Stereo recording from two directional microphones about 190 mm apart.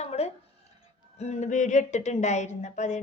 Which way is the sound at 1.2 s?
35° left (ahead or behind).